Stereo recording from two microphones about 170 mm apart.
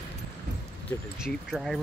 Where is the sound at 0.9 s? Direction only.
15° left (ahead or behind).